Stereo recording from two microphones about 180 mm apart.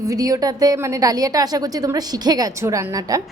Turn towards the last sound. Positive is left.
turn(degrees=-20)  # may be behind; listen again after turning